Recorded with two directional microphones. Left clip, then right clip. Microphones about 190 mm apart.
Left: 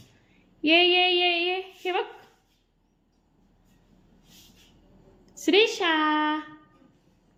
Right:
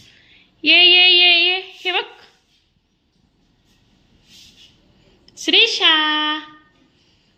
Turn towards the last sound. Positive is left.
turn(degrees=10)  # may be behind; listen again after turning